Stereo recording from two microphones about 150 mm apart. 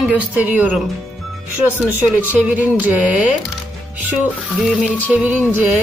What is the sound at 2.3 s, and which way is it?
Speech, 10° right (ahead or behind).